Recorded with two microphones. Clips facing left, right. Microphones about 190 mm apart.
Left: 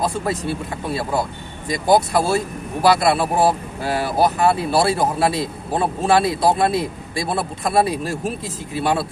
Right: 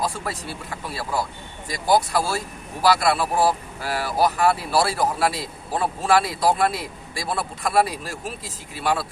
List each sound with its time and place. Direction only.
0.0 s speech: 25° left (ahead or behind)